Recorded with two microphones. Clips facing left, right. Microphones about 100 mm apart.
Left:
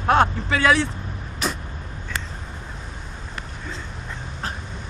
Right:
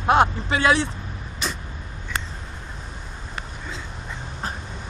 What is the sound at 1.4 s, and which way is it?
Vehicle, 5° left (ahead or behind).